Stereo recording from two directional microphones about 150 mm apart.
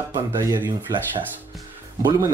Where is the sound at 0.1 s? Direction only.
25° right (ahead or behind).